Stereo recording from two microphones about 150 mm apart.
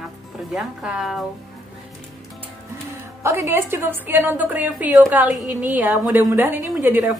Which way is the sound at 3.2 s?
20° right (ahead or behind).